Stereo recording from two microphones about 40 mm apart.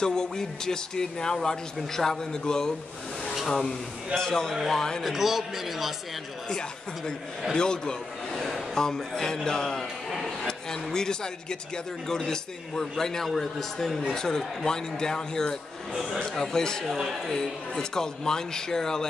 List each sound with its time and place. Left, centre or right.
0.0 s speech: centre
4.1 s speech: centre
5.0 s a man's voice: centre
7.5 s a sound: centre
8.7 s speech: centre
16.9 s a man's voice: centre
17.3 s speech: centre